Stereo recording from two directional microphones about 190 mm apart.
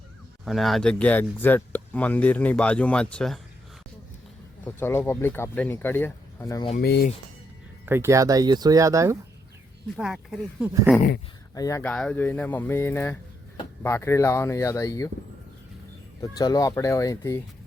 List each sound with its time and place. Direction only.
0.4 s speech: centre (ahead or behind)
4.6 s speech: 10° left (ahead or behind)
6.7 s speech: 55° left (ahead or behind)
7.9 s speech: 15° right (ahead or behind)
10.0 s speech: centre (ahead or behind)
11.5 s speech: 15° left (ahead or behind)
16.2 s speech: 20° left (ahead or behind)